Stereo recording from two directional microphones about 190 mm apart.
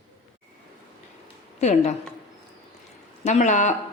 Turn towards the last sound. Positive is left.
turn(degrees=40)  # may be behind; listen again after turning